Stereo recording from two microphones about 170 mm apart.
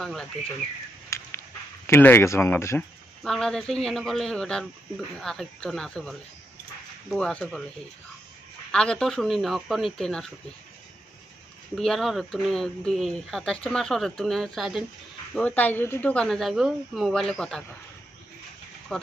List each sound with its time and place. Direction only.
0.0 s speech: 5° left (ahead or behind)
1.1 s a sound: 15° left (ahead or behind)
1.9 s speech: 10° left (ahead or behind)
3.3 s speech: 5° left (ahead or behind)
8.7 s speech: 5° left (ahead or behind)
11.7 s speech: centre (ahead or behind)
15.3 s speech: 10° left (ahead or behind)
18.9 s speech: centre (ahead or behind)